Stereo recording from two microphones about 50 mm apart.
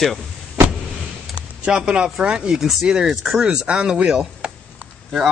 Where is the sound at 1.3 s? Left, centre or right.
Right.